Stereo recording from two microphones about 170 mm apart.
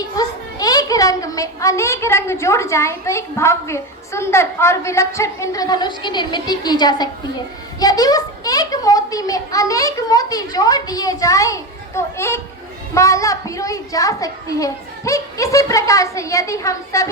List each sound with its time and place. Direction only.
0.0 s a child's voice: 20° left (ahead or behind)